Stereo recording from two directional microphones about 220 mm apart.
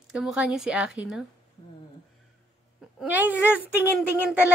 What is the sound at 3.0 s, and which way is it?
Speech, 5° right (ahead or behind).